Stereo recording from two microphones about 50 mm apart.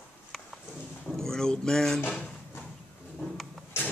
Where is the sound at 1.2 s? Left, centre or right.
Centre.